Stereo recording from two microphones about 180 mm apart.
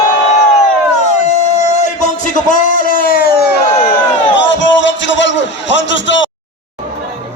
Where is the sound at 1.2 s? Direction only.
40° left (ahead or behind); by 3.3 s 55° left (ahead or behind).